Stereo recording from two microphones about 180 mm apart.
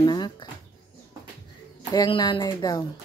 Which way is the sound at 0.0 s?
25° left (ahead or behind).